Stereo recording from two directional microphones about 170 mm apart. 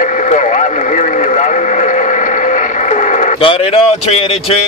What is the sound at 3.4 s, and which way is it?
A man's voice, 35° left (ahead or behind).